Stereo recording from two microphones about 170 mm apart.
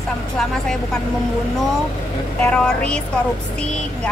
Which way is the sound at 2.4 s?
5° left (ahead or behind).